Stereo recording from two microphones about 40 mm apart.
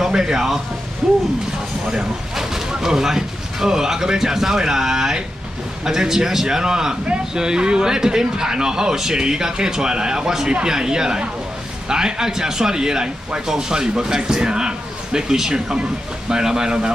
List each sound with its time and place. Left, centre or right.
0.0 s speech: centre
1.9 s a man's voice: centre